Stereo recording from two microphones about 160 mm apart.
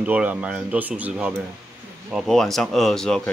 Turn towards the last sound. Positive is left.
turn(degrees=5)  # may be behind; listen again after turning